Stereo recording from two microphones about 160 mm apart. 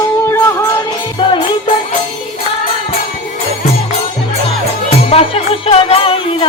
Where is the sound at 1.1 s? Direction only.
30° left (ahead or behind).